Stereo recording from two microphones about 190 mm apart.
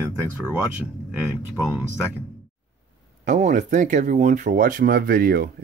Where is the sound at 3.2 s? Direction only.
40° right (ahead or behind).